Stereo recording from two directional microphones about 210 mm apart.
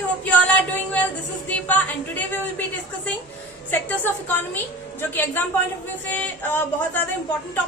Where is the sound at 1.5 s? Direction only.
10° left (ahead or behind).